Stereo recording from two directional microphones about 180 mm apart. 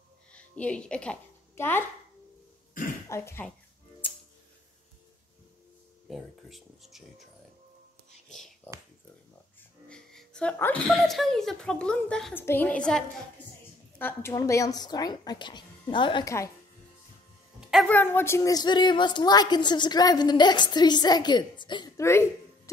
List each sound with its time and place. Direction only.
0.3 s a child's voice: 5° left (ahead or behind)
3.1 s a woman's voice: 15° left (ahead or behind)
6.0 s speech: centre (ahead or behind)
9.8 s a woman's voice: 5° left (ahead or behind); by 16.4 s 20° left (ahead or behind)
17.6 s a sound: 5° right (ahead or behind)
17.8 s speech: 10° left (ahead or behind)